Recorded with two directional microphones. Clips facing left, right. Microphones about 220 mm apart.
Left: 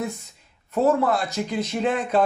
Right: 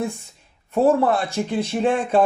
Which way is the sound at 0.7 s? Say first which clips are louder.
Right 3 dB; 30° right (ahead or behind).